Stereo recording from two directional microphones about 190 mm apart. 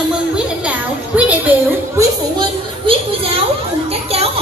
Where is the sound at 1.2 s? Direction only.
10° right (ahead or behind).